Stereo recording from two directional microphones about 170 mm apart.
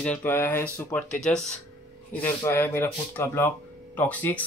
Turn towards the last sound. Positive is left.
turn(degrees=10)  # may be behind; listen again after turning